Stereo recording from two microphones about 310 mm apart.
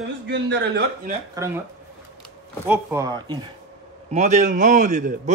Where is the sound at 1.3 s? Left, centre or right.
Centre.